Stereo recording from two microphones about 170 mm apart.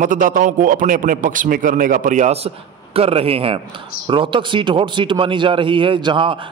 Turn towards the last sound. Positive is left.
turn(degrees=-30)  # may be behind; listen again after turning